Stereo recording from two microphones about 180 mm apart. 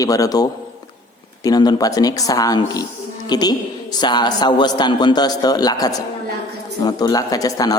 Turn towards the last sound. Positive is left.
turn(degrees=20)  # may be behind; listen again after turning